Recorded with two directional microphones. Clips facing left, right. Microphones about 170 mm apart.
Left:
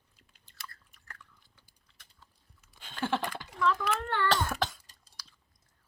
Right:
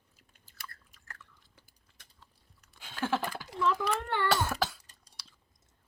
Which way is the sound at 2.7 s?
5° right (ahead or behind).